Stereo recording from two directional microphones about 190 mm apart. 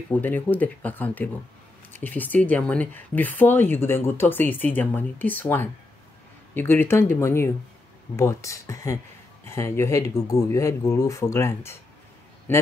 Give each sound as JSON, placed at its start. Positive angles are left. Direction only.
{"t": 0.1, "sound": "speech", "side_deg": 10}